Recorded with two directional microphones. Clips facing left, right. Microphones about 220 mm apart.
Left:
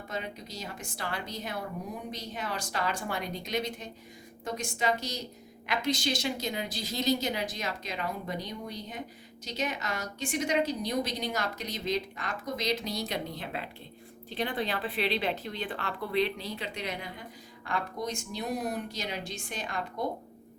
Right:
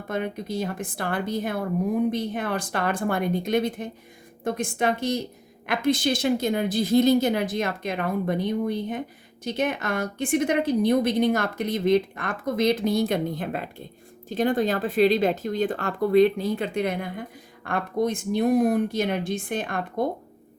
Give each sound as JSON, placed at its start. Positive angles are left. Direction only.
{"t": 0.1, "sound": "a woman's voice", "side_deg": -55}